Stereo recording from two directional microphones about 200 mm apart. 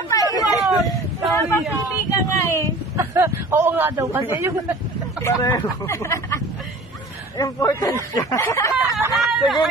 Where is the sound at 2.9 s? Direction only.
10° right (ahead or behind).